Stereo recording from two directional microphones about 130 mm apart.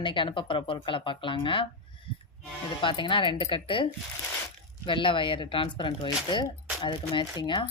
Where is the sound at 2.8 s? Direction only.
40° left (ahead or behind).